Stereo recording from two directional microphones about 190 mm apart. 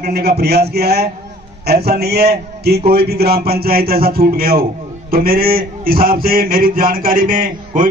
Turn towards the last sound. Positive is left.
turn(degrees=-45)  # may be behind; listen again after turning